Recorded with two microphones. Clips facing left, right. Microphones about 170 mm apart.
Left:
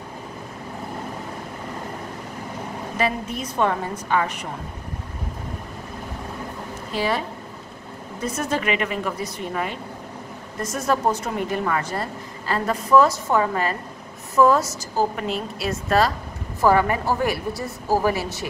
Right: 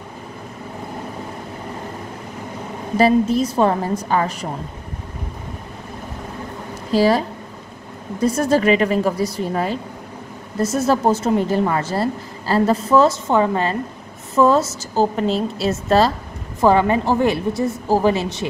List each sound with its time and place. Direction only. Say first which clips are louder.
3.0 s a woman's voice: right 11 dB; 35° right (ahead or behind)
6.9 s a woman's voice: right 9 dB; 35° right (ahead or behind)